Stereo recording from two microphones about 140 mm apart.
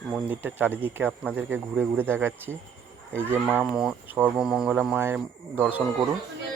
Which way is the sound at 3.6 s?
5° right (ahead or behind).